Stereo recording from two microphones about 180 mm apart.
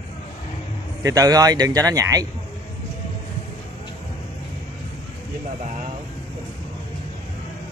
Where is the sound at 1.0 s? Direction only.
20° right (ahead or behind).